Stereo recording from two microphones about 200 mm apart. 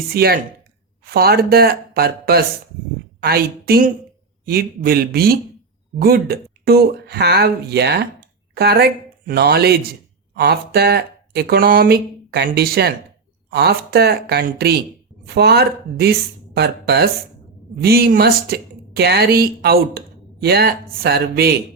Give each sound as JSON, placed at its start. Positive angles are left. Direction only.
{"t": 0.1, "sound": "speech", "side_deg": -50}